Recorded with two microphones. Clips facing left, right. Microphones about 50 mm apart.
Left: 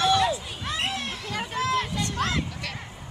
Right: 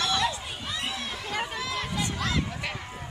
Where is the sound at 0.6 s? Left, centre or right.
Left.